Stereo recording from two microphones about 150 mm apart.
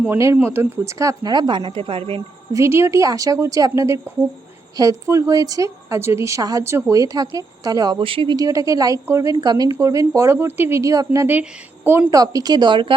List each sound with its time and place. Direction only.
0.1 s a woman's voice: 15° right (ahead or behind); by 2.2 s 40° right (ahead or behind)
2.5 s a woman's voice: 20° right (ahead or behind)